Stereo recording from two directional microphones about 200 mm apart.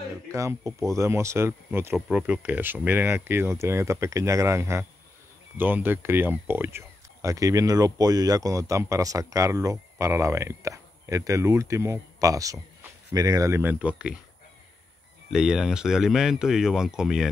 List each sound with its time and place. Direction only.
0.3 s speech: 15° right (ahead or behind)
15.3 s speech: 5° right (ahead or behind)